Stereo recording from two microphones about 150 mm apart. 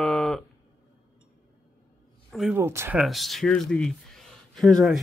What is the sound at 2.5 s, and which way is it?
Speech, 15° right (ahead or behind).